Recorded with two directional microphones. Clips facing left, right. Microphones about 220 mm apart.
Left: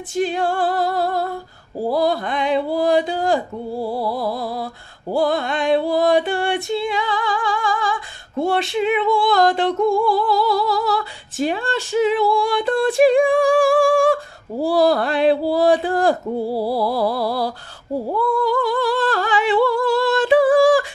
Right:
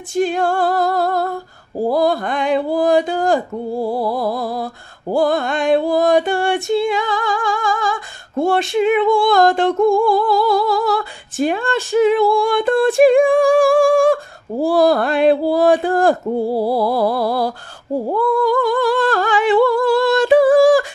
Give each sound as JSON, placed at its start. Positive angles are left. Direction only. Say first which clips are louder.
{"t": 0.1, "sound": "female singing", "louder": "right 3 dB", "side_deg": -45}
{"t": 1.9, "sound": "speech", "louder": "right 2 dB", "side_deg": -50}
{"t": 3.8, "sound": "music", "louder": "right 3 dB", "side_deg": -50}
{"t": 18.1, "sound": "humming", "louder": "right 3 dB", "side_deg": -50}